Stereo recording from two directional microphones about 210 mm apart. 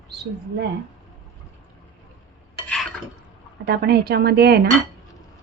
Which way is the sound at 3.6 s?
50° right (ahead or behind).